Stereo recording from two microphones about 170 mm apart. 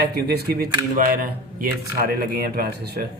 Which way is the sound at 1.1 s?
55° right (ahead or behind).